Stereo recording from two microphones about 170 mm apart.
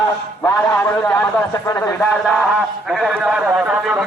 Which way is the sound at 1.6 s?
15° left (ahead or behind).